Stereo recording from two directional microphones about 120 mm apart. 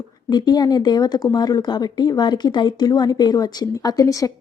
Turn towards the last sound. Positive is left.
turn(degrees=30)  # may be behind; listen again after turning